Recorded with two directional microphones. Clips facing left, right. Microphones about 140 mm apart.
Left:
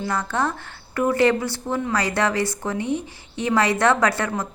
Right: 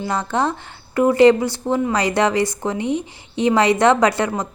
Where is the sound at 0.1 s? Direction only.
20° right (ahead or behind).